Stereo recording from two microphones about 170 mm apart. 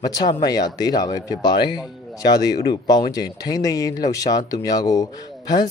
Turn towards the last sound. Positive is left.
turn(degrees=20)  # may be behind; listen again after turning